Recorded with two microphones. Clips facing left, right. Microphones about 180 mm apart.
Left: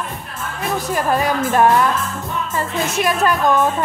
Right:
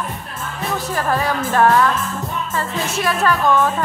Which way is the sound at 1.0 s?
15° left (ahead or behind).